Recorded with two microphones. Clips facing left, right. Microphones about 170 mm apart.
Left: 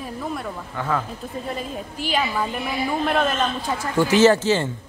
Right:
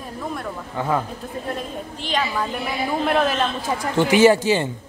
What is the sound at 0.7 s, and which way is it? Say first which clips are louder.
Speech: right 3 dB; 20° right (ahead or behind).